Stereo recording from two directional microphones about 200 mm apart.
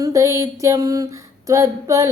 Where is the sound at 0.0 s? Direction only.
15° right (ahead or behind).